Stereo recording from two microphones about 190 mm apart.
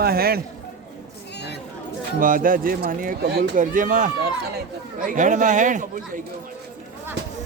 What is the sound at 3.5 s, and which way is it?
Speech, 45° right (ahead or behind).